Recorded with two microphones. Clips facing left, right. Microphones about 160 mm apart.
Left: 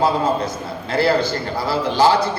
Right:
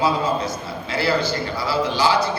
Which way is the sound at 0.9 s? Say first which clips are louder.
Left 4 dB; 50° left (ahead or behind).